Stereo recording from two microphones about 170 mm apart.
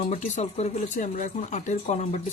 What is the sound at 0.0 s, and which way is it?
Speech, 45° left (ahead or behind).